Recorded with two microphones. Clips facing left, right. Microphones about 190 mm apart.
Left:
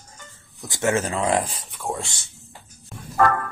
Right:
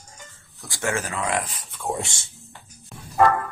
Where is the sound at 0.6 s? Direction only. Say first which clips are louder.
Left 5 dB; 20° left (ahead or behind).